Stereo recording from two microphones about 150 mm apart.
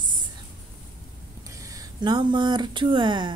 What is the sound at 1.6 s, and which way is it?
Speech, 25° right (ahead or behind).